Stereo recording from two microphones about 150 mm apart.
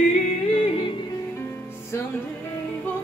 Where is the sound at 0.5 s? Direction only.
35° left (ahead or behind).